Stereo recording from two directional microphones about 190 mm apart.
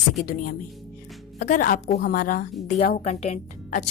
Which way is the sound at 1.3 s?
40° left (ahead or behind).